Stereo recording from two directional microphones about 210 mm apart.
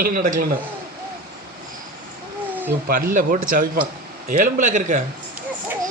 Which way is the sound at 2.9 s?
40° right (ahead or behind).